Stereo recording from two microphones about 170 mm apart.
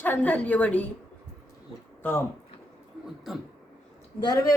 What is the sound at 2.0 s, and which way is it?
Speech, 15° left (ahead or behind).